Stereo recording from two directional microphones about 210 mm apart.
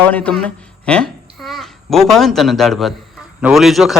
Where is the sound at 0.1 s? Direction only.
5° left (ahead or behind).